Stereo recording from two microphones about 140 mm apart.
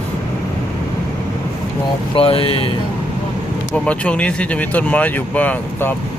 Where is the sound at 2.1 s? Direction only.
40° left (ahead or behind).